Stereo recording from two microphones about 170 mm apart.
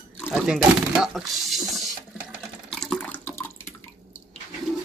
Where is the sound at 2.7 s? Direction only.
5° left (ahead or behind).